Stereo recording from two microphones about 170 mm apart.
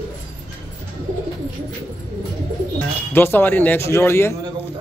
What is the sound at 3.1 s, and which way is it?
Speech, 15° left (ahead or behind).